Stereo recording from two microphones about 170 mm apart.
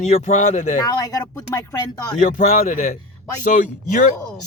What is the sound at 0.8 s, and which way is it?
Speech, 20° left (ahead or behind).